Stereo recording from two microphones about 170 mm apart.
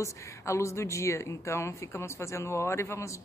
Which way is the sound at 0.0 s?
15° left (ahead or behind).